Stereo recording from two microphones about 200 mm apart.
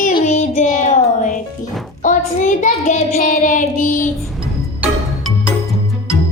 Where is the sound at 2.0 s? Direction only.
40° left (ahead or behind).